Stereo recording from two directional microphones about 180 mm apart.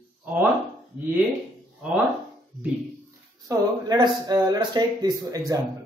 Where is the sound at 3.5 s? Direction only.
20° right (ahead or behind).